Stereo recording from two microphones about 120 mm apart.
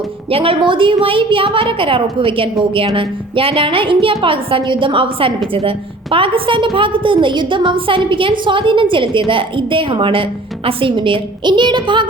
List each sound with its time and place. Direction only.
0.3 s a woman's voice: 55° right (ahead or behind)